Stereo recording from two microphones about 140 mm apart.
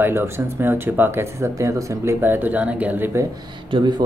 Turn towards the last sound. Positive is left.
turn(degrees=-35)  # may be behind; listen again after turning